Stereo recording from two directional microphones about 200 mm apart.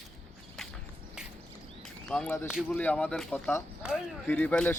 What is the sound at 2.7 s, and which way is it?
Speech, 5° left (ahead or behind).